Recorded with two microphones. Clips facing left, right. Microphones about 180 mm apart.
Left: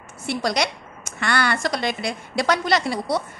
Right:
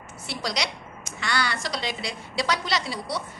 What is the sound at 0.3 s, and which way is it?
A woman's voice, 55° left (ahead or behind).